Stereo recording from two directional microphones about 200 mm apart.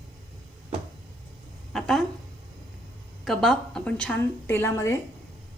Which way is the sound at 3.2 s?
Centre (ahead or behind).